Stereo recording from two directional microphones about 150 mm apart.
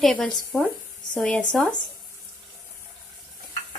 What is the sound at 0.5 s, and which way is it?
Speech, 15° left (ahead or behind).